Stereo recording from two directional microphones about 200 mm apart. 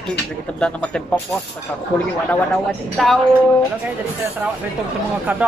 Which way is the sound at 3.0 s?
Centre (ahead or behind).